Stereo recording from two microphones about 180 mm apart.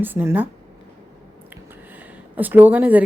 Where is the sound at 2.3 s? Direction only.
10° right (ahead or behind).